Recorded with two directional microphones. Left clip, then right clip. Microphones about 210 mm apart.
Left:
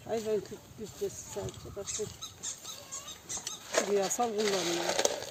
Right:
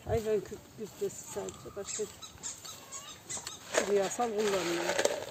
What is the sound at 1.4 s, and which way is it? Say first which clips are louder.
Speech: even; 20° left (ahead or behind).